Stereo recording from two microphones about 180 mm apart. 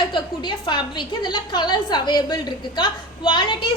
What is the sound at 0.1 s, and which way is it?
A woman's voice, 25° left (ahead or behind).